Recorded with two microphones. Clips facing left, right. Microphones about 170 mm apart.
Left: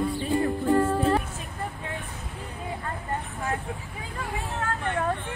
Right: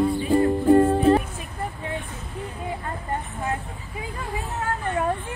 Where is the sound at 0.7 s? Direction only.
25° right (ahead or behind).